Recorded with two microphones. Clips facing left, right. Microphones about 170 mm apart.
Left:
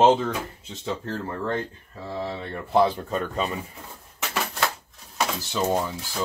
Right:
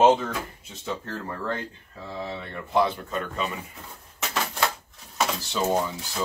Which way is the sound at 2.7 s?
35° left (ahead or behind).